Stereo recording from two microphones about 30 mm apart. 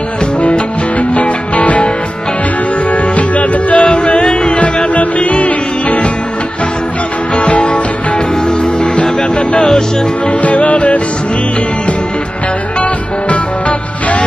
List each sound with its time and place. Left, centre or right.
0.4 s music: left
2.9 s music: left
3.7 s music: left
4.9 s music: left
7.3 s music: left
8.6 s music: left
10.4 s music: left
13.3 s music: left